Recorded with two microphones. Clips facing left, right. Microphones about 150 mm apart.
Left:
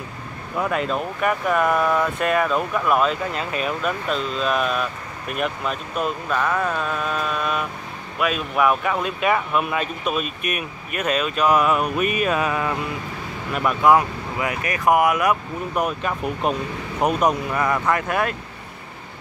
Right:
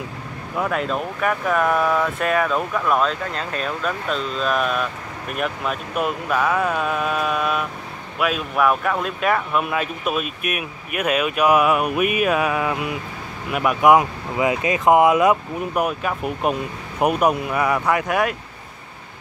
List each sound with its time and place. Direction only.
0.6 s speech: centre (ahead or behind); by 15.3 s 25° right (ahead or behind)
15.7 s speech: 5° right (ahead or behind)